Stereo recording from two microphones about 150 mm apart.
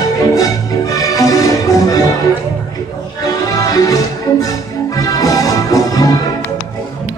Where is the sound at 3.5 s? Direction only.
25° left (ahead or behind).